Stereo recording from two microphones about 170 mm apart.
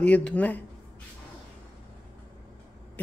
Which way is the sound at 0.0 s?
10° left (ahead or behind).